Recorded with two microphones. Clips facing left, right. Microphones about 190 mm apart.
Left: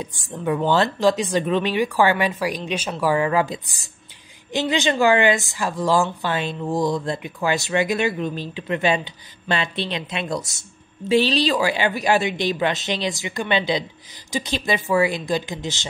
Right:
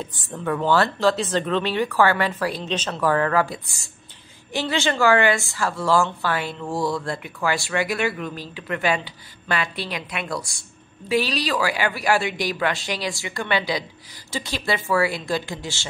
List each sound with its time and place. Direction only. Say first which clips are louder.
0.0 s a woman's voice: left 2 dB; 15° left (ahead or behind)